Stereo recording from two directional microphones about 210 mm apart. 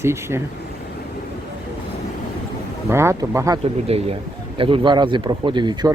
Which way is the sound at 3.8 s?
30° right (ahead or behind).